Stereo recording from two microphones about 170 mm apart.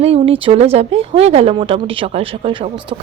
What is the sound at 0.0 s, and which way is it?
Speech, 35° right (ahead or behind).